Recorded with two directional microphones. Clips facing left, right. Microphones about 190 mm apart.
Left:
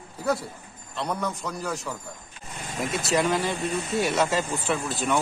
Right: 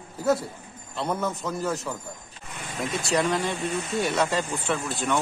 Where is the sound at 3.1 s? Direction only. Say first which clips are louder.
Left 1 dB; centre (ahead or behind).